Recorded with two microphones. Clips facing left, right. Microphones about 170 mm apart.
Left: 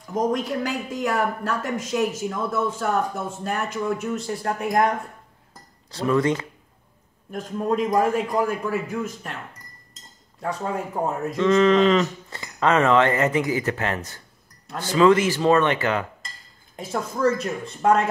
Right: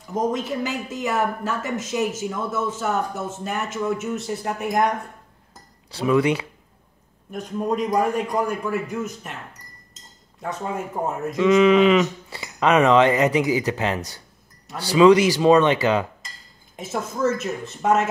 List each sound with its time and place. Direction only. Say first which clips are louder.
0.0 s speech: left 1 dB; 5° right (ahead or behind)
5.9 s speech: right 2 dB; 5° right (ahead or behind)
10.4 s speech: left 1 dB; centre (ahead or behind); by 16.1 s 20° right (ahead or behind)
16.7 s speech: even; 5° right (ahead or behind)